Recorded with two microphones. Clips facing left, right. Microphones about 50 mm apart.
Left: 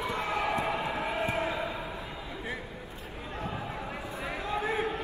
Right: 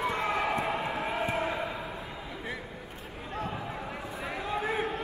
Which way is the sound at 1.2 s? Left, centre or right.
Centre.